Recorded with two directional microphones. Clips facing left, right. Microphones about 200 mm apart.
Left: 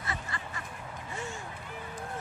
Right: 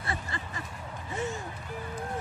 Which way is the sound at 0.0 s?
30° right (ahead or behind).